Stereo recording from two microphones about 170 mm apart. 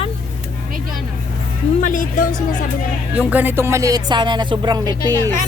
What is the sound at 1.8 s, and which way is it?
Speech, 50° left (ahead or behind).